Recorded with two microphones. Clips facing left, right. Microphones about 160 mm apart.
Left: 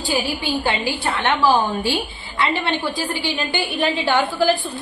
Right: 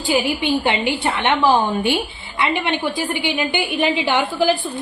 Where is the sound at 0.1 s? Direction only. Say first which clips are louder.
Right 4 dB; 20° right (ahead or behind).